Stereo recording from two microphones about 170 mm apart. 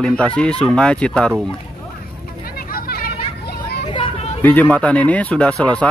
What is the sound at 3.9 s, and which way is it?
Children playing, 30° left (ahead or behind).